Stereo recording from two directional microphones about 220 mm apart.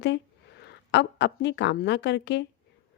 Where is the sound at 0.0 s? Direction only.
50° left (ahead or behind).